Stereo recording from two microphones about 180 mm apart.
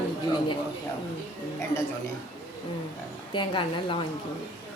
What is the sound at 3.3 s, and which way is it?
Speech, 25° left (ahead or behind).